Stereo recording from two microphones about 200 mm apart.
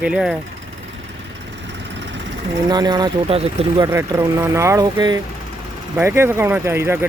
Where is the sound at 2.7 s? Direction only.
20° right (ahead or behind).